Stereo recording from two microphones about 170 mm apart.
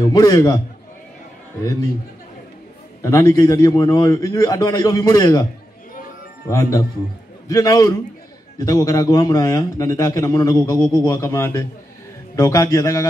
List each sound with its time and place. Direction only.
0.0 s a man's voice: 20° left (ahead or behind)
3.0 s a man's voice: 20° left (ahead or behind)
6.5 s a man's voice: 20° left (ahead or behind)